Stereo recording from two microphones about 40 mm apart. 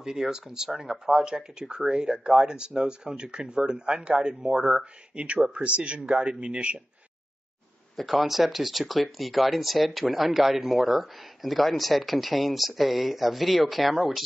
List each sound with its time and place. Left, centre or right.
0.0 s speech: centre
5.1 s speech: right
7.9 s speech: centre